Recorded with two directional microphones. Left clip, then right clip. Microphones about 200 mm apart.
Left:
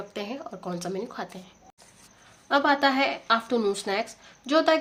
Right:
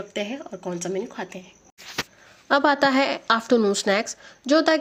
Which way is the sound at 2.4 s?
35° right (ahead or behind).